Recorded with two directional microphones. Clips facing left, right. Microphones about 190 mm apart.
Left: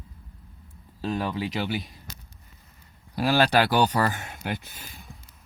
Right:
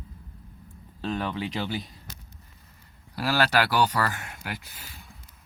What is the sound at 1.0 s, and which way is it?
Speech, 10° left (ahead or behind).